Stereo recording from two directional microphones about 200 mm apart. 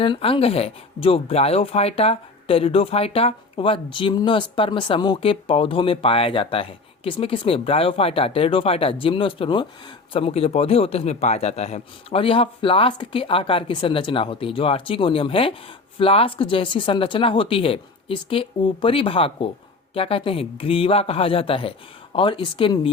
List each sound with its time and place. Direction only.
0.0 s speech: 25° left (ahead or behind)